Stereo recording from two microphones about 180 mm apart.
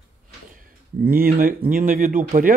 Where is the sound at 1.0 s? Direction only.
55° right (ahead or behind).